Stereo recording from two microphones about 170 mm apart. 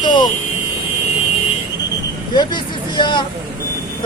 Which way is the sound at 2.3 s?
25° left (ahead or behind).